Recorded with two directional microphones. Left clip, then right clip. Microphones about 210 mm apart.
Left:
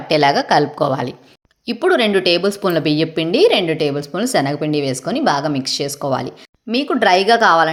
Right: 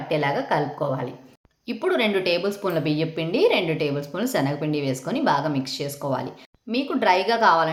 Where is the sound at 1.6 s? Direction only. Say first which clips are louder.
Left 7 dB; 35° left (ahead or behind).